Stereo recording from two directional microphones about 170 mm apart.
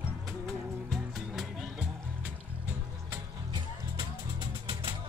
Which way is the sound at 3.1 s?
30° right (ahead or behind).